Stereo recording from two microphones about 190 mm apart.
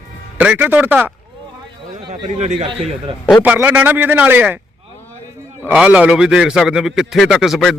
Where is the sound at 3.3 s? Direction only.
10° right (ahead or behind).